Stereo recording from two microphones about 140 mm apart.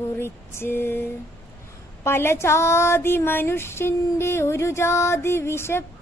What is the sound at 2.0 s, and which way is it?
Speech, 15° left (ahead or behind).